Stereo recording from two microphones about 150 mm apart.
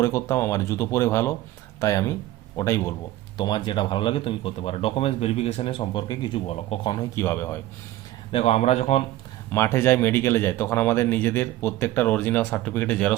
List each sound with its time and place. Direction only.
0.0 s speech: 20° left (ahead or behind)
3.3 s a man's voice: 30° left (ahead or behind)
8.3 s speech: 40° left (ahead or behind)
9.5 s speech: 15° left (ahead or behind)